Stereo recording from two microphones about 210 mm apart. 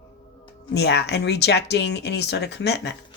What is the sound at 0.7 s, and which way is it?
Speech, 50° left (ahead or behind).